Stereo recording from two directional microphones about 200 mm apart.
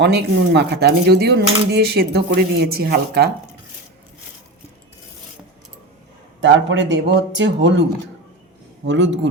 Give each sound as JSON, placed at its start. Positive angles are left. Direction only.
{"t": 0.0, "sound": "speech", "side_deg": -60}
{"t": 6.4, "sound": "speech", "side_deg": -65}
{"t": 8.9, "sound": "speech", "side_deg": -65}